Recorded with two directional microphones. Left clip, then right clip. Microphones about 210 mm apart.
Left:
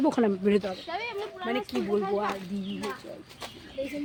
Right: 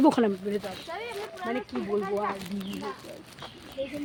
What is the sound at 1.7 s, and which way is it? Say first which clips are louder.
Speech: left 3 dB; 25° left (ahead or behind).